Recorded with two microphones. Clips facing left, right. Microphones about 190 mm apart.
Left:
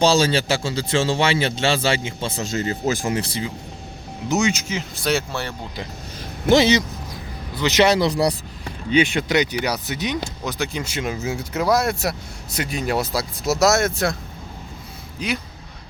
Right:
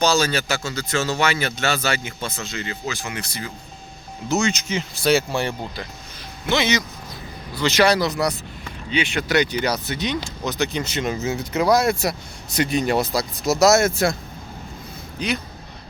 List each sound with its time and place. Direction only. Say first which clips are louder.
0.0 s speech: left 3 dB; 30° left (ahead or behind)
2.4 s speech: left 10 dB; 40° left (ahead or behind)
3.2 s speech: left 6 dB; 30° left (ahead or behind)
4.3 s speech: left 1 dB; 15° left (ahead or behind)
4.7 s speech: right 3 dB; centre (ahead or behind)
5.3 s speech: right 4 dB; 15° right (ahead or behind)
6.4 s speech: left 7 dB; 45° left (ahead or behind)
7.5 s speech: left 1 dB; 20° left (ahead or behind)
9.1 s speech: even; 20° left (ahead or behind); by 14.2 s centre (ahead or behind)
15.2 s speech: right 1 dB; centre (ahead or behind)